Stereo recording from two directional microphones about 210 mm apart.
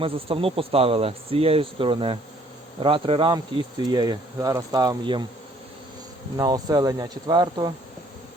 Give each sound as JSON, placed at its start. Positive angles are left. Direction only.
{"t": 0.0, "sound": "speech", "side_deg": -25}
{"t": 6.3, "sound": "speech", "side_deg": -20}